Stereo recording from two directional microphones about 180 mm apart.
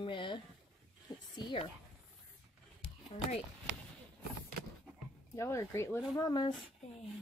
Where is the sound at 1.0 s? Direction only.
25° left (ahead or behind).